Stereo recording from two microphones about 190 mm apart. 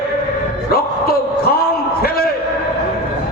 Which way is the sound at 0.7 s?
55° left (ahead or behind).